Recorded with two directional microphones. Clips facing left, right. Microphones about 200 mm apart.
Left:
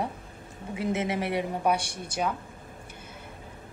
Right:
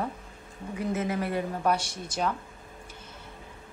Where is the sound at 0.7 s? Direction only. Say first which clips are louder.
Left 1 dB; 90° left.